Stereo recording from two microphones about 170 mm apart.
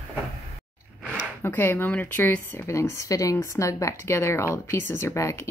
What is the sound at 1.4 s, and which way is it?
Speech, 10° left (ahead or behind).